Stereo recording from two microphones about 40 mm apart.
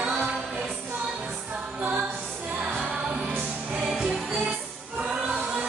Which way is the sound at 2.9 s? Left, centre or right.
Right.